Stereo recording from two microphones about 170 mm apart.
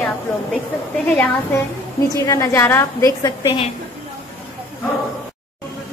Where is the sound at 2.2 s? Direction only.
15° left (ahead or behind).